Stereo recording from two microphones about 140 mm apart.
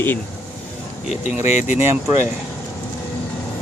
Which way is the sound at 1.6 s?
15° right (ahead or behind).